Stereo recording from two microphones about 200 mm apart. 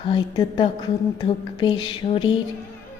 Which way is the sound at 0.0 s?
25° left (ahead or behind).